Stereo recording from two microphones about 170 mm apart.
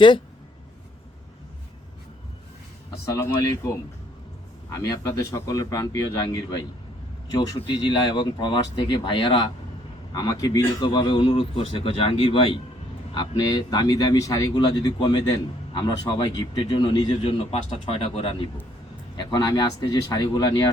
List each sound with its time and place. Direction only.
3.1 s speech: 15° left (ahead or behind)
4.7 s a man's voice: 20° left (ahead or behind)